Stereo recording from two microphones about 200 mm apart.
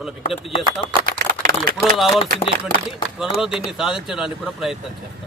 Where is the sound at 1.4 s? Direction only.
45° right (ahead or behind).